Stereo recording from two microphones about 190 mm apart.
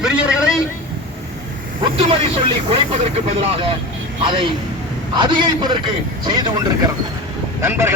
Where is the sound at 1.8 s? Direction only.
30° right (ahead or behind).